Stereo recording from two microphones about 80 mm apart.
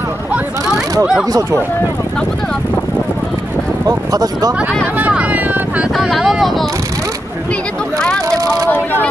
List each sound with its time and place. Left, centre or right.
3.8 s speech: right
4.9 s vehicle: centre
5.9 s speech: centre
8.3 s vehicle: right